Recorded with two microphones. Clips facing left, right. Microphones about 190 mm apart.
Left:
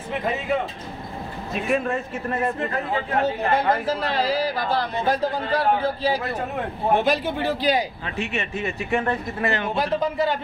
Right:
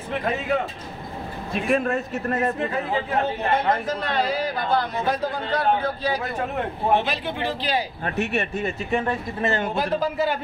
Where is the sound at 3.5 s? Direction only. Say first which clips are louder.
Left 1 dB; 30° left (ahead or behind).